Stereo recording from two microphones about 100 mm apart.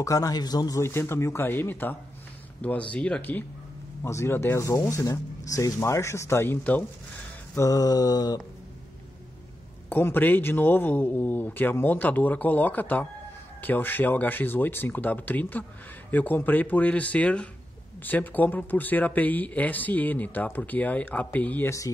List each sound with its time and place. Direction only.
0.0 s a man's voice: 35° left (ahead or behind); by 3.4 s 15° left (ahead or behind)
4.0 s a man's voice: 25° left (ahead or behind)
7.5 s mantra: 35° left (ahead or behind)
9.8 s a man's voice: 20° left (ahead or behind)
21.6 s mantra: 30° left (ahead or behind)